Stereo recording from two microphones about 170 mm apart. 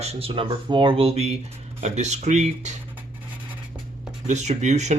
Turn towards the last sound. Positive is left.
turn(degrees=-45)  # may be behind; listen again after turning